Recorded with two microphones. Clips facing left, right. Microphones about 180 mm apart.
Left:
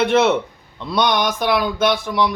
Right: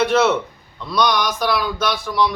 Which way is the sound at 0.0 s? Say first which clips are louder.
Left 1 dB; 25° left (ahead or behind).